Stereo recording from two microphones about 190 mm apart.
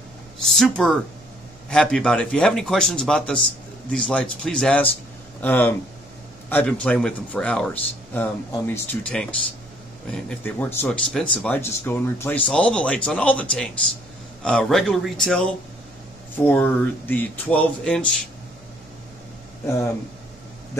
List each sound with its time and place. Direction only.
0.4 s speech: centre (ahead or behind)
19.6 s speech: 15° left (ahead or behind)